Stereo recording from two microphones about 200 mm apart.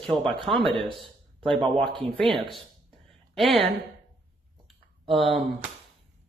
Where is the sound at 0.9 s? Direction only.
Centre (ahead or behind).